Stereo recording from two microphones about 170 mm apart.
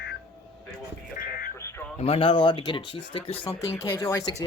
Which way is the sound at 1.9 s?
35° left (ahead or behind).